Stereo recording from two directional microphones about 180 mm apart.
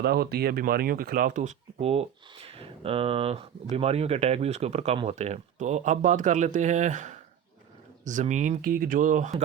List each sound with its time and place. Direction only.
0.0 s speech: 60° right (ahead or behind)